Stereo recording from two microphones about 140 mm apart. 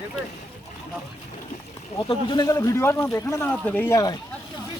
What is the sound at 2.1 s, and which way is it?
Speech, 35° left (ahead or behind).